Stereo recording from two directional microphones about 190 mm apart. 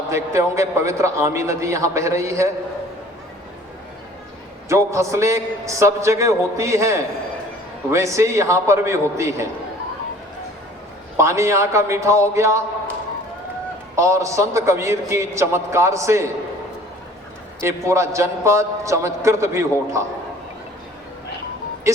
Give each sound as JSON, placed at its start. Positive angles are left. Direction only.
{"t": 0.1, "sound": "a man's voice", "side_deg": -15}
{"t": 4.7, "sound": "a man's voice", "side_deg": -15}
{"t": 11.2, "sound": "a man's voice", "side_deg": -15}
{"t": 13.9, "sound": "a man's voice", "side_deg": -15}
{"t": 17.6, "sound": "a man's voice", "side_deg": -15}
{"t": 21.9, "sound": "speech", "side_deg": -15}